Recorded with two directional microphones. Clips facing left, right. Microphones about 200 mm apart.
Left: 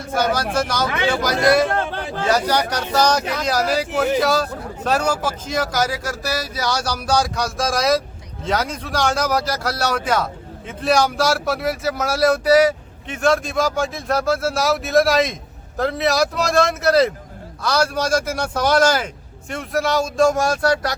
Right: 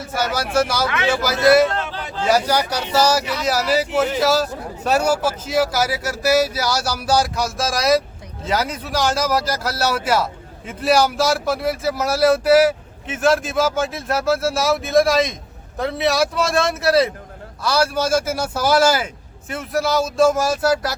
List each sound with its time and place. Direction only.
0.1 s speech: 5° right (ahead or behind)
1.7 s a sound: 55° left (ahead or behind)
2.2 s speech: 10° right (ahead or behind)